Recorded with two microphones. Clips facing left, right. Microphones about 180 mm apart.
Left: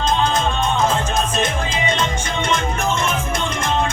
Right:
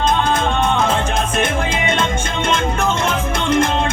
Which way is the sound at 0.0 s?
55° right (ahead or behind).